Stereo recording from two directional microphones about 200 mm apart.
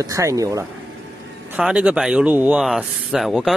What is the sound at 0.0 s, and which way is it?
Speech, 15° right (ahead or behind).